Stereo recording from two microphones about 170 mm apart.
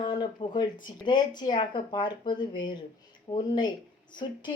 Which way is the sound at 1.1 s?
25° left (ahead or behind).